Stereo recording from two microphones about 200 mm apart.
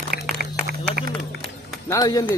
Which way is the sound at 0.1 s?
50° right (ahead or behind).